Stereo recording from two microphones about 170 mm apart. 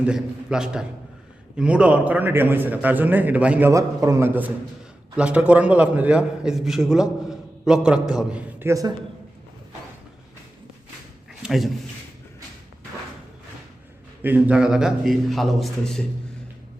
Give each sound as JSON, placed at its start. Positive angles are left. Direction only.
{"t": 0.0, "sound": "a man's voice", "side_deg": -5}
{"t": 3.7, "sound": "a man's voice", "side_deg": -20}
{"t": 11.4, "sound": "a man's voice", "side_deg": 0}
{"t": 14.2, "sound": "a man's voice", "side_deg": -10}